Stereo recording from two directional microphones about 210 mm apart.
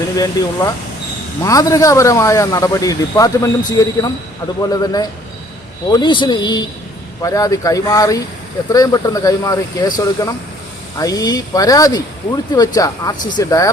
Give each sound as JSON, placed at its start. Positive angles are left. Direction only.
{"t": 0.4, "sound": "speech", "side_deg": 15}